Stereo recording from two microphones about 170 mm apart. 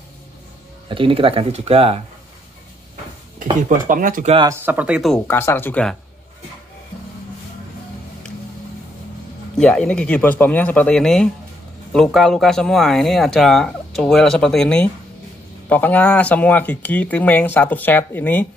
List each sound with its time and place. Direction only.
0.8 s speech: 30° right (ahead or behind)
3.6 s speech: 50° right (ahead or behind)
4.5 s speech: 10° right (ahead or behind)
5.1 s speech: 15° left (ahead or behind)
9.6 s speech: 5° left (ahead or behind)